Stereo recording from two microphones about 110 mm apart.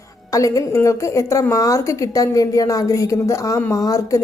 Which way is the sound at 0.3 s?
30° left (ahead or behind).